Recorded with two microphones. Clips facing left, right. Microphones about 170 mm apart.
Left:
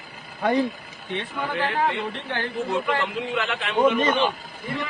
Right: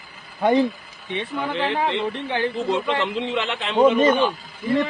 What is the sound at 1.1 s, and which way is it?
Speech, 25° right (ahead or behind).